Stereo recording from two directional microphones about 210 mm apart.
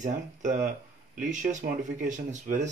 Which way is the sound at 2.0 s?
40° right (ahead or behind).